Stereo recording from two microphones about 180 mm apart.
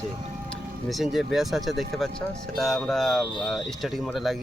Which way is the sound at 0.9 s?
Centre (ahead or behind).